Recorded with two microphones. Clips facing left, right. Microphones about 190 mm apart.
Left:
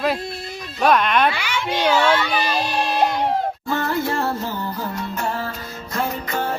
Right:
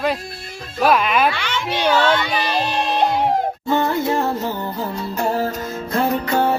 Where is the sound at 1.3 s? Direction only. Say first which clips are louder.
Right 1 dB; 10° left (ahead or behind).